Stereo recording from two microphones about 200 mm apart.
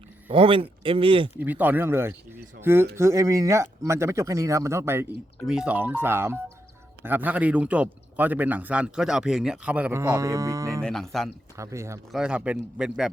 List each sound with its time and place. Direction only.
0.3 s speech: 25° right (ahead or behind)
1.4 s a man's voice: 10° right (ahead or behind)
10.8 s a man's voice: centre (ahead or behind)
11.5 s a man's voice: 15° right (ahead or behind)
12.1 s a man's voice: 5° right (ahead or behind)